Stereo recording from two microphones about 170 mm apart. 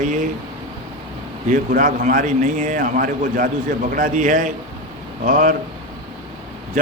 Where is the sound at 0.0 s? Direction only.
50° right (ahead or behind).